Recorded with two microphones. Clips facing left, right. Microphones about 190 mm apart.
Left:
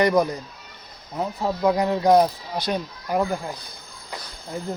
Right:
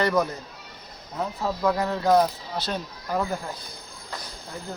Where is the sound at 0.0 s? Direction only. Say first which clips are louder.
Left 4 dB; 15° left (ahead or behind).